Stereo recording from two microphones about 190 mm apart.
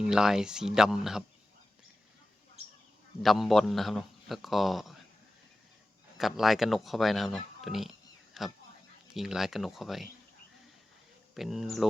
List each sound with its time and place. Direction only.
0.0 s a man's voice: centre (ahead or behind)
3.2 s a man's voice: centre (ahead or behind)
6.1 s a man's voice: centre (ahead or behind)
11.3 s a man's voice: centre (ahead or behind)